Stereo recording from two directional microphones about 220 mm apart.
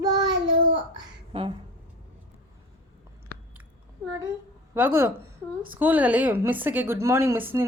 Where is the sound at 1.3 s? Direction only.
25° right (ahead or behind).